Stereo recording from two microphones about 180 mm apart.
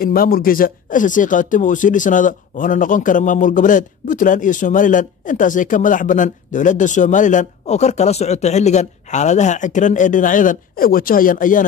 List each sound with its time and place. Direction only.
0.0 s speech: 55° left (ahead or behind)